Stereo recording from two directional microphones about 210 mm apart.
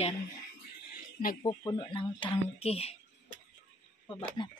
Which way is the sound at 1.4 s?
20° left (ahead or behind).